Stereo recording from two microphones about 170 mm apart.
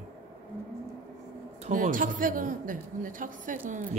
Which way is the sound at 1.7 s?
50° right (ahead or behind).